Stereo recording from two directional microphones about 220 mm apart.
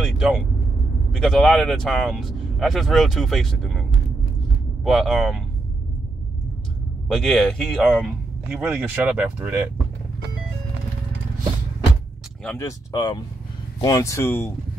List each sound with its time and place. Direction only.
0.0 s speech: centre (ahead or behind)
4.8 s speech: centre (ahead or behind)
7.1 s speech: centre (ahead or behind)
12.4 s speech: 15° left (ahead or behind)